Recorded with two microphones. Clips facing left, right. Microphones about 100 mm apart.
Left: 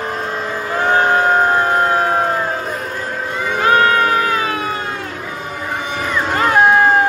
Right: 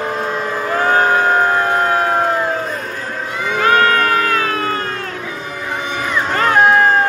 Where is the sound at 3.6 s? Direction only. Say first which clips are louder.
Even; 20° left (ahead or behind).